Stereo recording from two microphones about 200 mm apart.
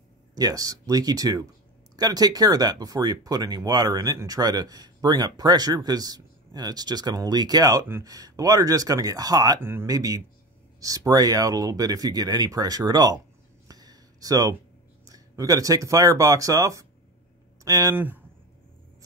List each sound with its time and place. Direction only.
0.3 s speech: 20° right (ahead or behind)
13.7 s a sound: 20° right (ahead or behind)
15.0 s speech: 20° right (ahead or behind)